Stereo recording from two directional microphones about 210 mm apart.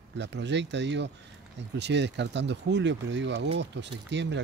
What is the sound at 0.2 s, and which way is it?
Speech, 55° right (ahead or behind).